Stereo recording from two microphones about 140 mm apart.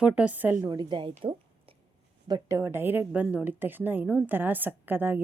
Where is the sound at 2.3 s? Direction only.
20° right (ahead or behind).